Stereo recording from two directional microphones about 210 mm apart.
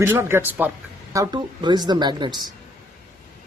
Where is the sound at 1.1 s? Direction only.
20° right (ahead or behind).